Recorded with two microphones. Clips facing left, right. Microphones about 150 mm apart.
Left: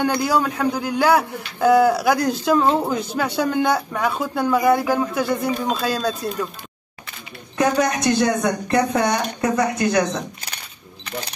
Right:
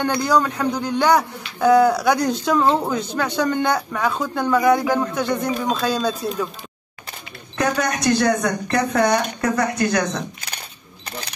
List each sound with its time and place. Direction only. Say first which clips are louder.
0.0 s speech: even; 10° left (ahead or behind)
7.5 s speech: left 3 dB; 20° left (ahead or behind)